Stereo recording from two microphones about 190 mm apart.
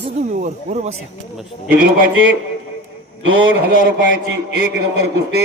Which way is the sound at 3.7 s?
50° right (ahead or behind).